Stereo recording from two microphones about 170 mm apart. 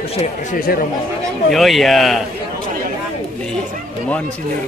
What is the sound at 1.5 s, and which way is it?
Speech, centre (ahead or behind).